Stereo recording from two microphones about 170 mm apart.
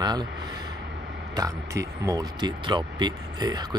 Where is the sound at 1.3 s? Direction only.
20° right (ahead or behind).